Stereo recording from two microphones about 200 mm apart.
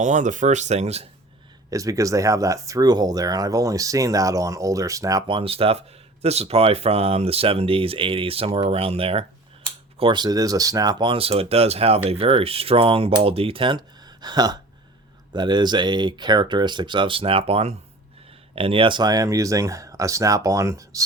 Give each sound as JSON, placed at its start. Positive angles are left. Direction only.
{"t": 0.0, "sound": "speech", "side_deg": -40}
{"t": 1.7, "sound": "speech", "side_deg": -15}